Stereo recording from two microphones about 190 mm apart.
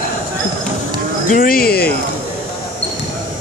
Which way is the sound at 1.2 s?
45° left (ahead or behind).